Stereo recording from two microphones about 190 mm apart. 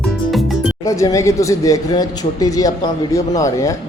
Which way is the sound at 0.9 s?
15° left (ahead or behind).